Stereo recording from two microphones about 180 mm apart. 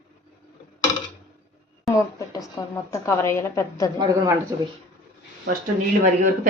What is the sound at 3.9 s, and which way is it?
Speech, 25° right (ahead or behind).